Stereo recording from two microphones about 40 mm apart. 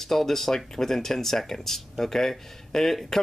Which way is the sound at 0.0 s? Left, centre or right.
Centre.